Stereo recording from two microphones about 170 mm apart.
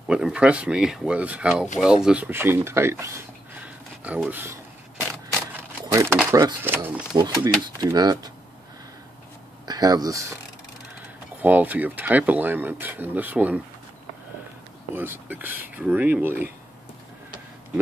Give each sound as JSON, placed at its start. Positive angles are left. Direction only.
{"t": 0.1, "sound": "speech", "side_deg": -5}
{"t": 5.9, "sound": "speech", "side_deg": -15}
{"t": 7.2, "sound": "speech", "side_deg": -25}
{"t": 9.7, "sound": "speech", "side_deg": -20}
{"t": 11.4, "sound": "speech", "side_deg": -10}
{"t": 15.0, "sound": "speech", "side_deg": -10}